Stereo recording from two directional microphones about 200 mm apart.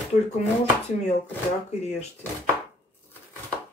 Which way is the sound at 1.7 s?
35° left (ahead or behind).